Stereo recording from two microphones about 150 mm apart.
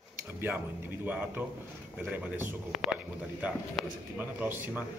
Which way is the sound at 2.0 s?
10° right (ahead or behind).